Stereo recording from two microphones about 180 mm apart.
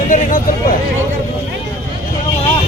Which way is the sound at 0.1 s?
45° left (ahead or behind).